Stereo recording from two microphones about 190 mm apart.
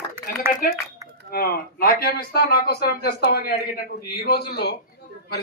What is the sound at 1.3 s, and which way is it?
A man's voice, 50° left (ahead or behind).